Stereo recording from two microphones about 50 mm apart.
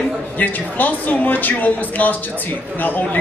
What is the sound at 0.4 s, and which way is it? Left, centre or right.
Speech, left.